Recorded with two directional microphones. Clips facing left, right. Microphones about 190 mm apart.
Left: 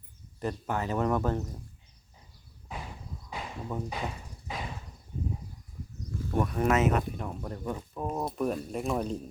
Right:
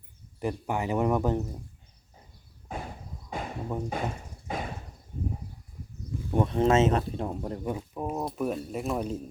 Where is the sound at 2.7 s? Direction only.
50° right (ahead or behind).